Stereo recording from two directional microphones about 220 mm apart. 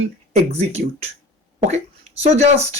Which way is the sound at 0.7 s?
30° right (ahead or behind).